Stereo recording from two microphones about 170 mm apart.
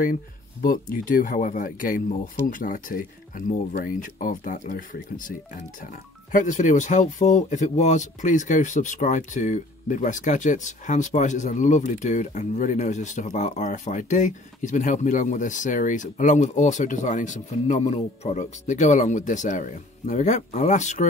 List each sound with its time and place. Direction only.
0.0 s speech: 55° left (ahead or behind)